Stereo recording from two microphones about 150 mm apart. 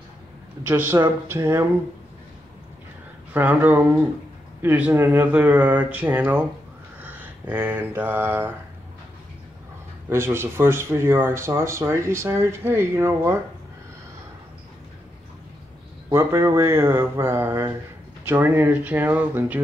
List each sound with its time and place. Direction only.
0.7 s speech: 15° right (ahead or behind)
3.3 s speech: 10° right (ahead or behind)
7.0 s a sound: 10° right (ahead or behind)
10.0 s speech: 15° right (ahead or behind)
16.1 s speech: 20° right (ahead or behind)